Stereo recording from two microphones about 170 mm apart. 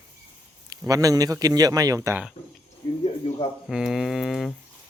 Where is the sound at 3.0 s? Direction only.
35° left (ahead or behind).